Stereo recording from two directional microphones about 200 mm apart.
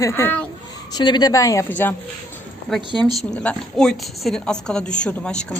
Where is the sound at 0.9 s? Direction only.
20° left (ahead or behind).